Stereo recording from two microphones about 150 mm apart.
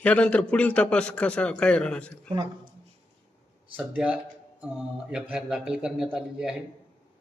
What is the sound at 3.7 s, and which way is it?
A man's voice, 10° right (ahead or behind).